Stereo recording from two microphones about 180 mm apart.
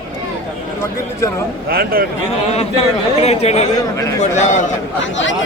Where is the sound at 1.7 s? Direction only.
55° right (ahead or behind).